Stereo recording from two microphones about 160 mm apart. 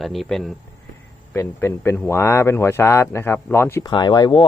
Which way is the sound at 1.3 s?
15° left (ahead or behind).